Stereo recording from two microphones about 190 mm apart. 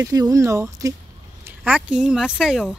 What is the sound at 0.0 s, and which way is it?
Speech, 20° right (ahead or behind).